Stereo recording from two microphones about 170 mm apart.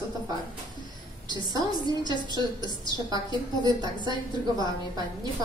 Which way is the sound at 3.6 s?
25° right (ahead or behind).